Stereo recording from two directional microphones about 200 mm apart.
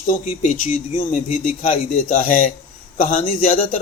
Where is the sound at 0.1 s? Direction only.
35° left (ahead or behind).